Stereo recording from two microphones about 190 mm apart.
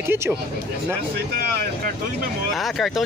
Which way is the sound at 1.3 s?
55° right (ahead or behind).